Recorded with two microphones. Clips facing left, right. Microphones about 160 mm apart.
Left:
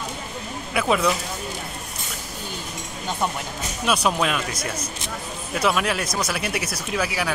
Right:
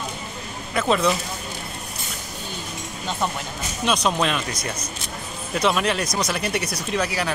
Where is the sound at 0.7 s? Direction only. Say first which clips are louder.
Right 1 dB; 5° left (ahead or behind).